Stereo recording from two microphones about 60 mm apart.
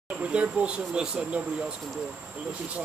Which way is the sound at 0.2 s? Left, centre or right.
Right.